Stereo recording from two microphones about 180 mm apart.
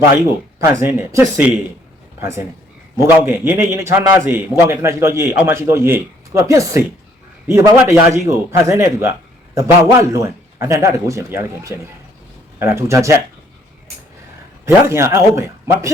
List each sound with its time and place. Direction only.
0.6 s a man's voice: 15° right (ahead or behind)
14.8 s a man's voice: 15° right (ahead or behind)